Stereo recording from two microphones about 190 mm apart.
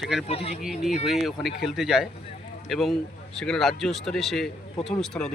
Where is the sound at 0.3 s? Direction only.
30° left (ahead or behind).